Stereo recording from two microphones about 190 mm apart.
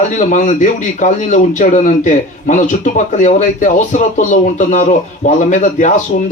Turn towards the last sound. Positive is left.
turn(degrees=40)  # may be behind; listen again after turning